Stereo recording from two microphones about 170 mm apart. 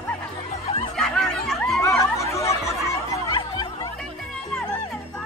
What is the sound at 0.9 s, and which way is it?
Music, centre (ahead or behind).